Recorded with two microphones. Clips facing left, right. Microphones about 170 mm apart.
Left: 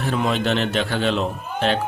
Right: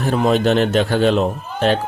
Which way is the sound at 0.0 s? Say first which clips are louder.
Right 6 dB; 45° right (ahead or behind).